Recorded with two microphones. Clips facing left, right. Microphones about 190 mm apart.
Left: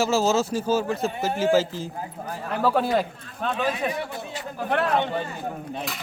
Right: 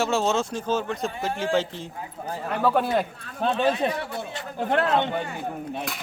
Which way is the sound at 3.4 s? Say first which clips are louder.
Right 3 dB; 30° right (ahead or behind).